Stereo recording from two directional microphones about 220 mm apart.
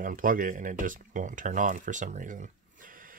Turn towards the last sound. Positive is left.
turn(degrees=-40)  # may be behind; listen again after turning